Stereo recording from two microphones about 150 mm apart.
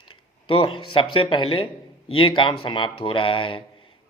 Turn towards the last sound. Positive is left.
turn(degrees=35)  # may be behind; listen again after turning